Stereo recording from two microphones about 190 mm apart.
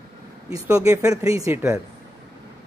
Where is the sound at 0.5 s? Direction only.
15° right (ahead or behind).